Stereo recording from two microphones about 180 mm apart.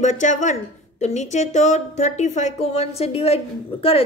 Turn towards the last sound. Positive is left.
turn(degrees=35)  # may be behind; listen again after turning